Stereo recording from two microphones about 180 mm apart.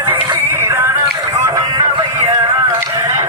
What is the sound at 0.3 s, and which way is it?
Music, 15° right (ahead or behind).